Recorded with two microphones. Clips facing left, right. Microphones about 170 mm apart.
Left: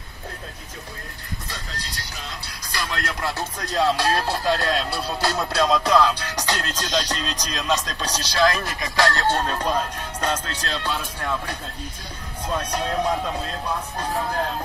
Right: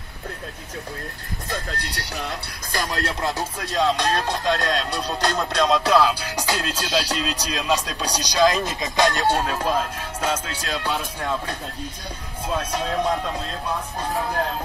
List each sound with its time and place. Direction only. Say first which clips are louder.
1.5 s speech: right 6 dB; 60° right (ahead or behind)
2.8 s music: right 2 dB; 35° right (ahead or behind)
3.5 s speech: left 2 dB; centre (ahead or behind)
12.4 s speech: even; centre (ahead or behind)